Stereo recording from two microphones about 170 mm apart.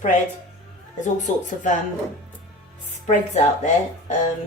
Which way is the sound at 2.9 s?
45° left (ahead or behind).